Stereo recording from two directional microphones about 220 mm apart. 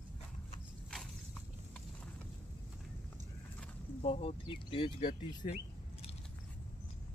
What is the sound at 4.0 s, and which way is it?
Speech, 25° left (ahead or behind).